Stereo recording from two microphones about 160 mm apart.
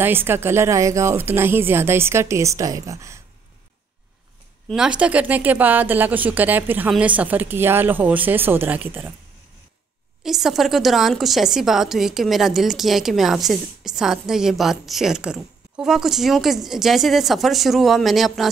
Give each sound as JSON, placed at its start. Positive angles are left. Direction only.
{"t": 0.0, "sound": "speech", "side_deg": -15}
{"t": 4.6, "sound": "speech", "side_deg": -5}
{"t": 10.2, "sound": "a woman's voice", "side_deg": 0}